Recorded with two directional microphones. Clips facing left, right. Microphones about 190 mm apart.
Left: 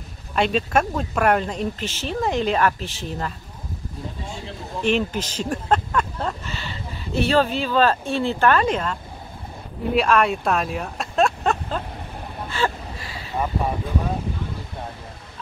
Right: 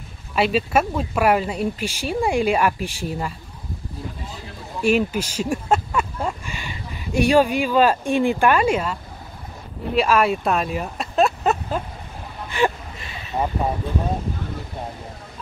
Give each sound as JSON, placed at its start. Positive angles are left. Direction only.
{"t": 0.4, "sound": "speech", "side_deg": -5}
{"t": 4.8, "sound": "speech", "side_deg": -10}
{"t": 9.9, "sound": "speech", "side_deg": -5}
{"t": 12.4, "sound": "a sound", "side_deg": -15}